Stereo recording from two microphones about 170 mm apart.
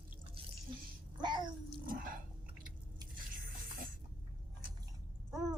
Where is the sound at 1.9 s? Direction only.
55° right (ahead or behind).